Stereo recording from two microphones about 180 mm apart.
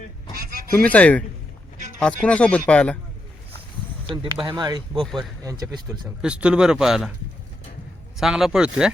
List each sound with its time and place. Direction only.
0.3 s a sound: 55° right (ahead or behind)
0.8 s speech: 10° left (ahead or behind)
4.1 s speech: 25° right (ahead or behind)
6.2 s speech: 5° right (ahead or behind)
8.2 s speech: 5° right (ahead or behind)